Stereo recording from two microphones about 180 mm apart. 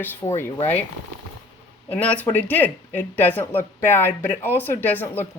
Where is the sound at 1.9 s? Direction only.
5° left (ahead or behind).